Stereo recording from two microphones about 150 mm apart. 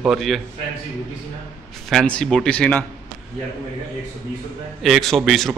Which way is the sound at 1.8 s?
5° left (ahead or behind).